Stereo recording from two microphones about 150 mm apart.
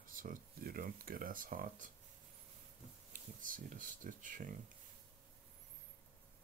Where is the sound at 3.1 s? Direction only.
60° right (ahead or behind).